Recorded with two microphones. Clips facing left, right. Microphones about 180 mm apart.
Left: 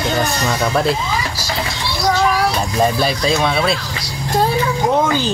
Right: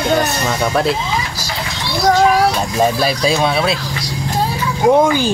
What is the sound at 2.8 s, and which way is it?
Speech, 5° right (ahead or behind).